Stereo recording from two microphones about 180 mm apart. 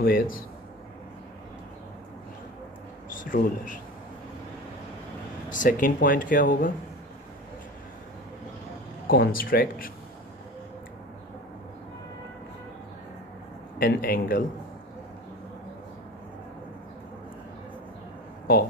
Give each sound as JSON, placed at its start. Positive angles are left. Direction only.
{"t": 0.0, "sound": "speech", "side_deg": 50}
{"t": 3.2, "sound": "speech", "side_deg": 45}
{"t": 5.5, "sound": "speech", "side_deg": 45}
{"t": 9.0, "sound": "speech", "side_deg": 55}
{"t": 13.7, "sound": "speech", "side_deg": 55}